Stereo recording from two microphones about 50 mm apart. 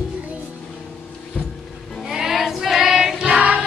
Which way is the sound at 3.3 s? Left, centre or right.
Right.